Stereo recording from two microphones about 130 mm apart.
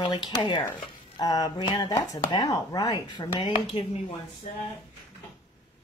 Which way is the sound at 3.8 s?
45° left (ahead or behind).